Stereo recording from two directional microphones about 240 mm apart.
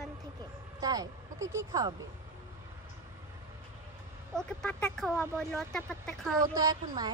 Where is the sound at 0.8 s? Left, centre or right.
Centre.